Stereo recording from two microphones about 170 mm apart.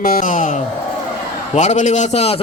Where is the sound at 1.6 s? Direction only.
45° left (ahead or behind).